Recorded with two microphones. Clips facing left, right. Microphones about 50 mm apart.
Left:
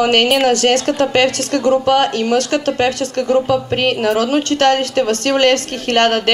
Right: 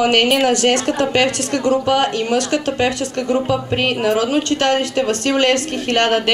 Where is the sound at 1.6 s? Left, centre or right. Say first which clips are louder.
Left 3 dB; left.